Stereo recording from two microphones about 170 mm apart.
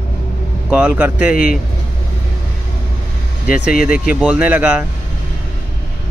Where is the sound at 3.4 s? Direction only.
55° left (ahead or behind).